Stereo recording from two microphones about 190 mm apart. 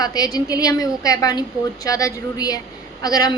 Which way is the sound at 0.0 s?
20° left (ahead or behind).